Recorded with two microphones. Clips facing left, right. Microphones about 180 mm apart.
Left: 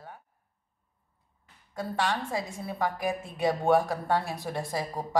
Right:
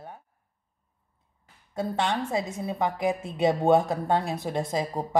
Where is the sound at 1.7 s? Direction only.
25° right (ahead or behind).